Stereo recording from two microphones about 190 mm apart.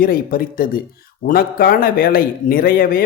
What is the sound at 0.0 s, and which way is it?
Speech, 50° left (ahead or behind).